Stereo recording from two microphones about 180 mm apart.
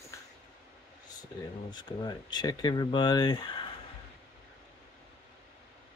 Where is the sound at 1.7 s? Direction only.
25° left (ahead or behind).